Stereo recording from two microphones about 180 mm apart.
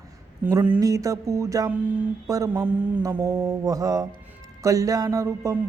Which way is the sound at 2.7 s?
10° right (ahead or behind).